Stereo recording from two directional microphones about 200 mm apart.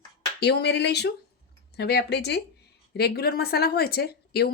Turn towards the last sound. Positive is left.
turn(degrees=50)  # may be behind; listen again after turning